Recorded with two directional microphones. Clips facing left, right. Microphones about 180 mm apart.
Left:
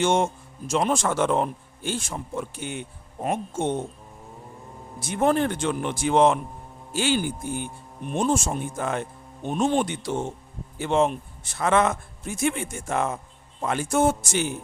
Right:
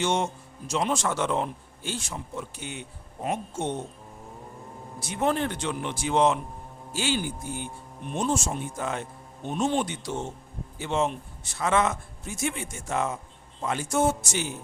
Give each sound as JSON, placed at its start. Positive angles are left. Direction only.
{"t": 0.0, "sound": "a man's voice", "side_deg": 50}
{"t": 4.9, "sound": "a man's voice", "side_deg": 50}